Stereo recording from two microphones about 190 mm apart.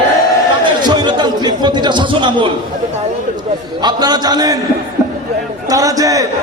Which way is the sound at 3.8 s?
20° right (ahead or behind).